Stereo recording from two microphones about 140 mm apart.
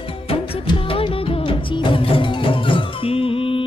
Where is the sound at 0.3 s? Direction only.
40° left (ahead or behind).